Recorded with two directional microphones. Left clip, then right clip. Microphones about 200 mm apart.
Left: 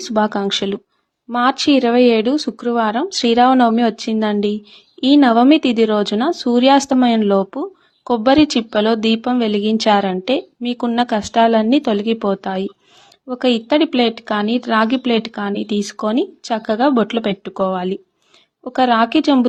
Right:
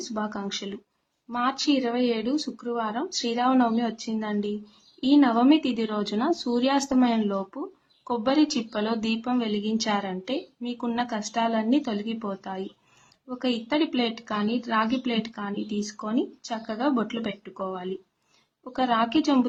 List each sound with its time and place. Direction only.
0.1 s speech: 45° left (ahead or behind)